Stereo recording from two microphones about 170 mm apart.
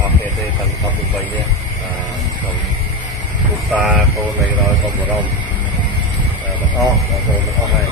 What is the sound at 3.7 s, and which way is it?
Speech, 5° right (ahead or behind).